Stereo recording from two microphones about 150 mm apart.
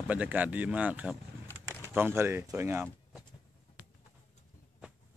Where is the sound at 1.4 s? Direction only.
15° left (ahead or behind).